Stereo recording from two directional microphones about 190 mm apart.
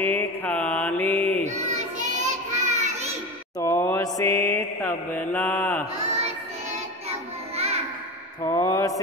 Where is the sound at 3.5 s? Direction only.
15° left (ahead or behind).